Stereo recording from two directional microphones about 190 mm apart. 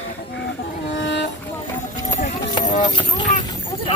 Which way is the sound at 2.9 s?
25° left (ahead or behind).